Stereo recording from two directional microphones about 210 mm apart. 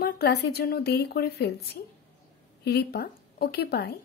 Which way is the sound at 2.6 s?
50° left (ahead or behind).